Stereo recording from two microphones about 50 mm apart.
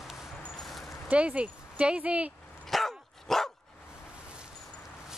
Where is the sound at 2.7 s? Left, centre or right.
Centre.